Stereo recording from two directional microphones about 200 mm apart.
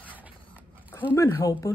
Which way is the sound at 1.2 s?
10° left (ahead or behind).